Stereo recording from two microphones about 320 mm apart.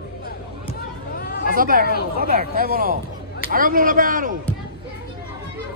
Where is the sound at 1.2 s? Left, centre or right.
Left.